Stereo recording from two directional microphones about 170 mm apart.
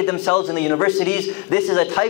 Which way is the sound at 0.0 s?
10° left (ahead or behind).